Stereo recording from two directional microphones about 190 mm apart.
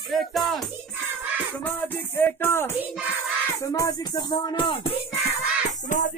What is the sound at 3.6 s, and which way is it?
Speech, 15° left (ahead or behind).